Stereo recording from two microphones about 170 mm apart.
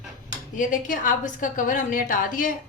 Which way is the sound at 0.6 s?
50° left (ahead or behind).